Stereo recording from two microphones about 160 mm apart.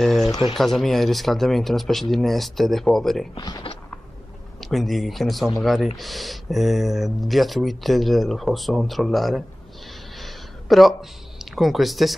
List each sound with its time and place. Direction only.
0.2 s speech: 20° left (ahead or behind)
0.6 s speech: centre (ahead or behind)
3.3 s speech: 20° left (ahead or behind)
4.6 s speech: centre (ahead or behind)
10.1 s a sound: centre (ahead or behind)